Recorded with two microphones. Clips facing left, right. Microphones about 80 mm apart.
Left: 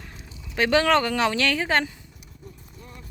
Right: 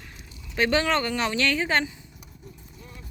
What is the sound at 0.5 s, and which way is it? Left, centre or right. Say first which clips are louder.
Speech: left 3 dB; left.